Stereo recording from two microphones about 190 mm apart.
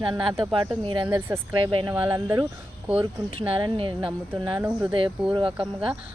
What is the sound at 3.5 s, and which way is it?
Speech, 25° right (ahead or behind).